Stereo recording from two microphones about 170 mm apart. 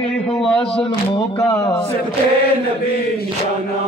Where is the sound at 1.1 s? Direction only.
30° left (ahead or behind).